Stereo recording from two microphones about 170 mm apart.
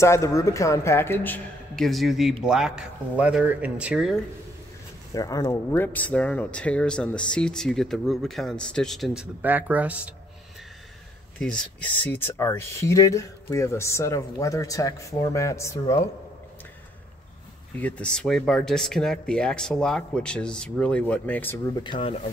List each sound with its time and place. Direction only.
0.0 s speech: 15° left (ahead or behind); by 4.2 s 5° right (ahead or behind)
5.1 s speech: 20° left (ahead or behind); by 10.1 s 10° right (ahead or behind)
11.3 s speech: 5° left (ahead or behind)
17.7 s speech: 10° left (ahead or behind)
21.7 s speech: 30° left (ahead or behind)